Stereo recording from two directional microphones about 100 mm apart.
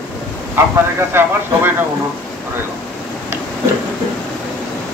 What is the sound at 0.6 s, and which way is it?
Speech, 25° right (ahead or behind).